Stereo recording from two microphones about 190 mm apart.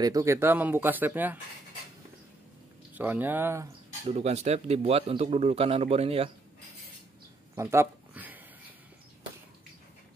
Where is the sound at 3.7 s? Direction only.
30° right (ahead or behind).